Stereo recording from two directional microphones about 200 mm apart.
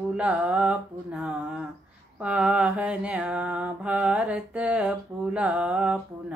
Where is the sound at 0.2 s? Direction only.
5° right (ahead or behind).